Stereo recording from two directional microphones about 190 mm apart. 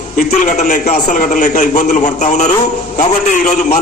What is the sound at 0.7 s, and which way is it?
A man's voice, 40° left (ahead or behind).